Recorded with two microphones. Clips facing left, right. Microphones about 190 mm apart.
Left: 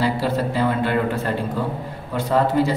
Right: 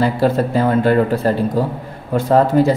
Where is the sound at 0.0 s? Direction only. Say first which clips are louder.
Right 5 dB; 50° right (ahead or behind).